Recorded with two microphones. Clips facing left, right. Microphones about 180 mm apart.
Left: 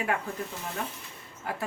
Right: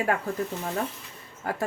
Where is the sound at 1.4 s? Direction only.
45° right (ahead or behind).